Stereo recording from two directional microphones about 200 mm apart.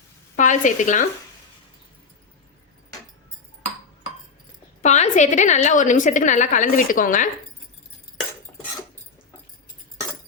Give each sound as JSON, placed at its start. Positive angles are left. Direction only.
{"t": 0.3, "sound": "a woman's voice", "side_deg": 40}
{"t": 4.8, "sound": "a woman's voice", "side_deg": 35}